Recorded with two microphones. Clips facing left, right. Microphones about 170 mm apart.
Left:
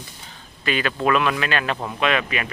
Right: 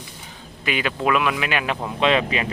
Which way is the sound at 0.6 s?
15° right (ahead or behind).